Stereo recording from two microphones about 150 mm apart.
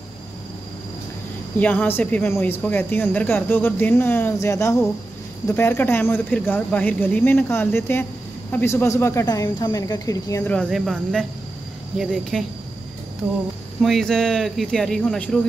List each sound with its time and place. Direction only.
1.6 s speech: 10° left (ahead or behind)
10.4 s speech: 5° left (ahead or behind)
13.7 s speech: centre (ahead or behind)